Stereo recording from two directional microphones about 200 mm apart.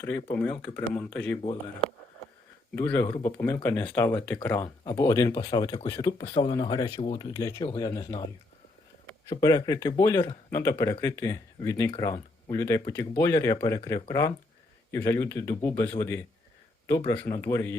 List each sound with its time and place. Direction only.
0.0 s speech: 10° left (ahead or behind)
3.1 s speech: 20° left (ahead or behind)
3.4 s speech: 10° left (ahead or behind)
9.3 s speech: 15° left (ahead or behind)